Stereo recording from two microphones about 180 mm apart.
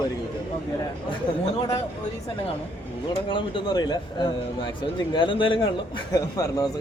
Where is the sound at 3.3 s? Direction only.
25° left (ahead or behind).